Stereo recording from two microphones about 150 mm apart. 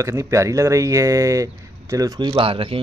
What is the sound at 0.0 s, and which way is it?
Speech, 20° right (ahead or behind).